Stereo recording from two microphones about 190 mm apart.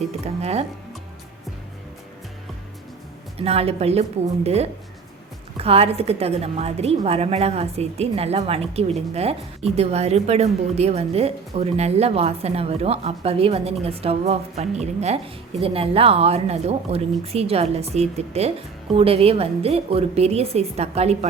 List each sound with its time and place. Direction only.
3.3 s a woman's voice: 30° right (ahead or behind)